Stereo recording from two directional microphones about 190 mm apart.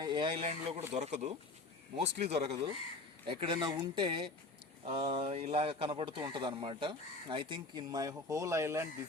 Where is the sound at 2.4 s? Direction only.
30° right (ahead or behind); by 8.8 s 15° right (ahead or behind).